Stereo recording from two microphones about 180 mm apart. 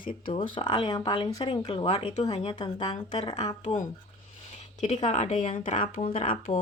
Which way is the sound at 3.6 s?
40° left (ahead or behind).